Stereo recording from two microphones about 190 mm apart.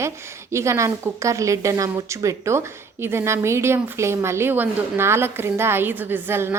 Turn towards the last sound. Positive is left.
turn(degrees=-10)  # may be behind; listen again after turning